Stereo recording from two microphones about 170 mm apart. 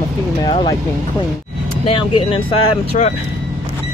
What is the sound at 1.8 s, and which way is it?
Speech, 30° left (ahead or behind).